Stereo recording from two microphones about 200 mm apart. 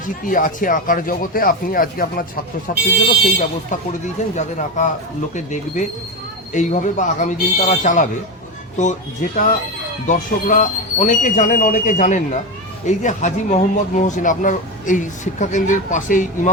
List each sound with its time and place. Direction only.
0.3 s speech: 45° left (ahead or behind)